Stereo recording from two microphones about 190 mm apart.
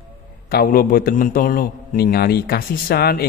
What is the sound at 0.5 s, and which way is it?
A man's voice, 50° left (ahead or behind).